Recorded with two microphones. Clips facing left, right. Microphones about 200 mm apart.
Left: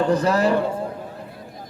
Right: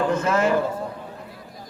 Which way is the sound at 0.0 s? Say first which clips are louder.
Left 2 dB; 35° left (ahead or behind).